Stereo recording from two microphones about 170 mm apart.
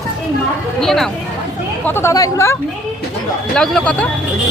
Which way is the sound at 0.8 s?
Centre (ahead or behind).